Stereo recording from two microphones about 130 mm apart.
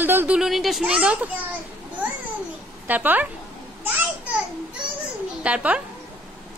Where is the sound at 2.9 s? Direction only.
15° right (ahead or behind).